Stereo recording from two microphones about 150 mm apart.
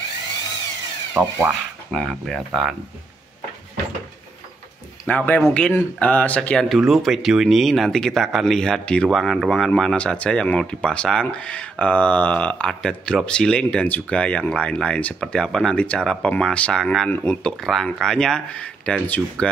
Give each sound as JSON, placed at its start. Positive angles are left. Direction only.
{"t": 1.1, "sound": "speech", "side_deg": -20}
{"t": 1.9, "sound": "speech", "side_deg": 5}
{"t": 5.0, "sound": "speech", "side_deg": 10}